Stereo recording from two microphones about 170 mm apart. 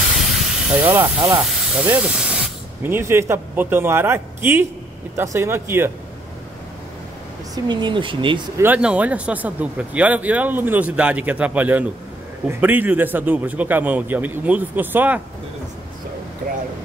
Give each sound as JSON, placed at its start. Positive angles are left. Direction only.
{"t": 0.7, "sound": "speech", "side_deg": -15}
{"t": 7.5, "sound": "speech", "side_deg": -25}
{"t": 8.5, "sound": "speech", "side_deg": -10}